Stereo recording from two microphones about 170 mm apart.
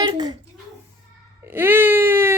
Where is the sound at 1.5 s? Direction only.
15° right (ahead or behind).